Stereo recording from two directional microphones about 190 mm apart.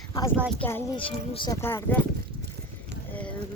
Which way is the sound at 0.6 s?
10° left (ahead or behind).